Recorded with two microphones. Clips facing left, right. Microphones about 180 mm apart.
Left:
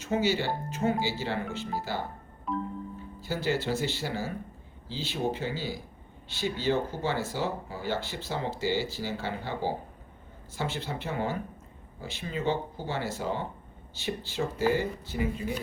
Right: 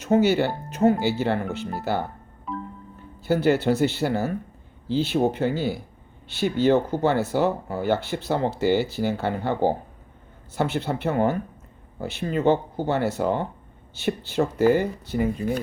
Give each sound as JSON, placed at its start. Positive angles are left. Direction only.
{"t": 0.0, "sound": "speech", "side_deg": -65}
{"t": 2.5, "sound": "music", "side_deg": 0}
{"t": 3.2, "sound": "speech", "side_deg": -60}